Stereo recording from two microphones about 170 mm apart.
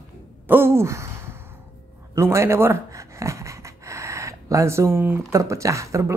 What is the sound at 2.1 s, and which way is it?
Speech, 15° right (ahead or behind).